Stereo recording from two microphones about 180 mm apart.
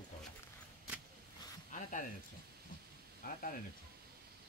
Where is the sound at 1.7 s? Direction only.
45° left (ahead or behind).